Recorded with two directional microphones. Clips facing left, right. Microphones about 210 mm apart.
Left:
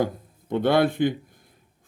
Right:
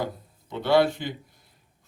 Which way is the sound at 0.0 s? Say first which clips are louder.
Left 6 dB; 50° left (ahead or behind).